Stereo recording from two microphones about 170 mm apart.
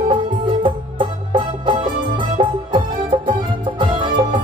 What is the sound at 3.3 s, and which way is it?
Music, 30° right (ahead or behind).